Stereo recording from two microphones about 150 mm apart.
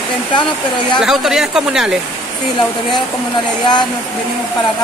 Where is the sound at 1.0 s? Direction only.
5° right (ahead or behind).